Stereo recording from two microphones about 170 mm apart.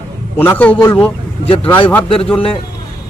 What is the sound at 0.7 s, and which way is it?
Speech, 25° left (ahead or behind).